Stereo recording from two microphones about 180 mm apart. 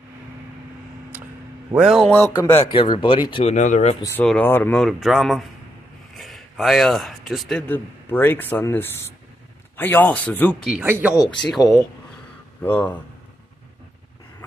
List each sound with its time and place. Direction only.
1.8 s speech: centre (ahead or behind)
2.1 s speech: 10° left (ahead or behind)
2.7 s speech: 30° left (ahead or behind)
3.5 s speech: 40° left (ahead or behind)
4.2 s a man's voice: 5° left (ahead or behind)
10.7 s speech: 10° right (ahead or behind); by 13.0 s 10° left (ahead or behind)